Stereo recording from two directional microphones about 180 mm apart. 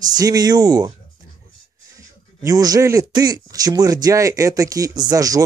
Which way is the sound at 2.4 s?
20° right (ahead or behind).